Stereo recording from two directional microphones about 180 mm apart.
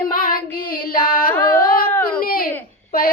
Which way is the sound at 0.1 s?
50° left (ahead or behind).